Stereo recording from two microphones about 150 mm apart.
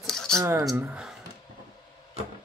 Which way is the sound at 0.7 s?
5° right (ahead or behind).